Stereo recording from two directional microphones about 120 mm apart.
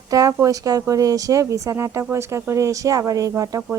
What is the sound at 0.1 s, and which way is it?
Speech, 30° right (ahead or behind).